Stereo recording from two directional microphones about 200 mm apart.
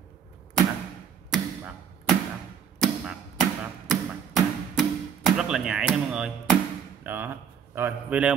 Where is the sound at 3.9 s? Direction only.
Centre (ahead or behind).